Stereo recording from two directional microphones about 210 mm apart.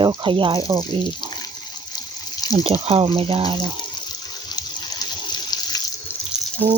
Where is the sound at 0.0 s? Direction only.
25° right (ahead or behind).